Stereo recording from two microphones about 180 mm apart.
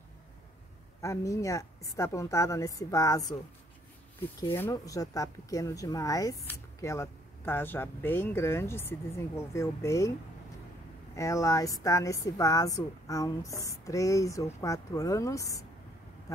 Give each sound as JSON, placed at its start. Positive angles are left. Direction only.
{"t": 1.0, "sound": "speech", "side_deg": 15}
{"t": 4.4, "sound": "speech", "side_deg": 15}
{"t": 11.1, "sound": "speech", "side_deg": 15}